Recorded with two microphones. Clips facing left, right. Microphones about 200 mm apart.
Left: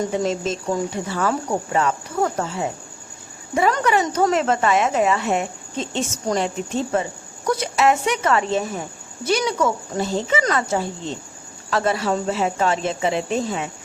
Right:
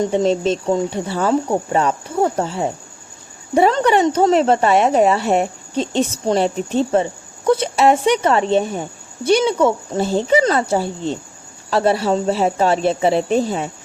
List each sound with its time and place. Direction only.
0.0 s speech: 25° right (ahead or behind)